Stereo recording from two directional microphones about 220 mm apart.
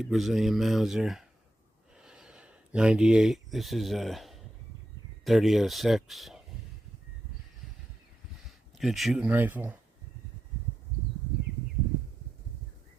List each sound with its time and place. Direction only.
0.0 s speech: centre (ahead or behind)
2.0 s a sound: 5° right (ahead or behind)
5.2 s speech: centre (ahead or behind)
8.4 s speech: centre (ahead or behind)